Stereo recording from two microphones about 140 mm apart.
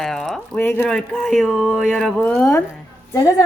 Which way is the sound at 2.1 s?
15° left (ahead or behind).